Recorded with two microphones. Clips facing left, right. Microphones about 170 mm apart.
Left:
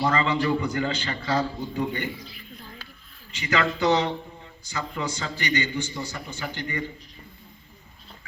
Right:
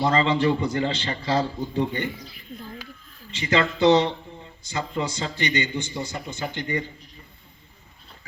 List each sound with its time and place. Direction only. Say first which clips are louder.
0.0 s a man's voice: right 3 dB; 25° right (ahead or behind)
3.4 s a man's voice: right 4 dB; 25° right (ahead or behind)